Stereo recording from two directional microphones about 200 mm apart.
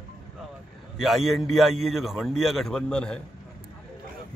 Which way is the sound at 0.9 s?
Centre (ahead or behind).